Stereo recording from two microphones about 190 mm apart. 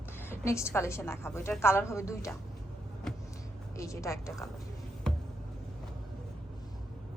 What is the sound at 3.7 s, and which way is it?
Speech, 15° left (ahead or behind).